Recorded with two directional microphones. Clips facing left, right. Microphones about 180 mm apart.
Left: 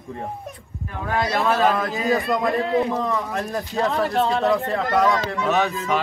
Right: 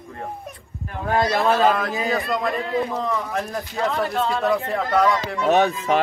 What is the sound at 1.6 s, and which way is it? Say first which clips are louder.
Speech: even; centre (ahead or behind).